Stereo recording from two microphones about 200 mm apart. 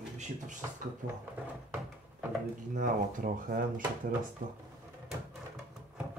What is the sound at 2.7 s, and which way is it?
Speech, 45° right (ahead or behind).